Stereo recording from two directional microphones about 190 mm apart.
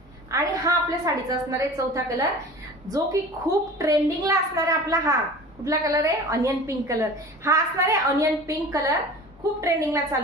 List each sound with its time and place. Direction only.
0.3 s a woman's voice: 15° right (ahead or behind)